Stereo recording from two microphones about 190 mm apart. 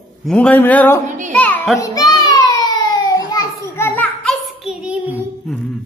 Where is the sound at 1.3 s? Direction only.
10° left (ahead or behind).